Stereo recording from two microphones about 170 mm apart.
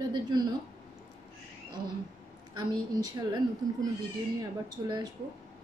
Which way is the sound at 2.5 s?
20° right (ahead or behind).